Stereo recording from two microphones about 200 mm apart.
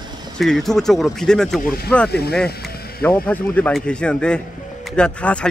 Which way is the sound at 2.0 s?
55° left (ahead or behind).